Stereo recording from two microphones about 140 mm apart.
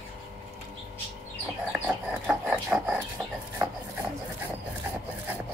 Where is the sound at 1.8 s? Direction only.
10° right (ahead or behind).